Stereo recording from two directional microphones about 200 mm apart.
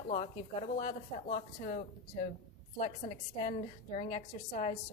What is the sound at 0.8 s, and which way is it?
A woman's voice, 40° left (ahead or behind).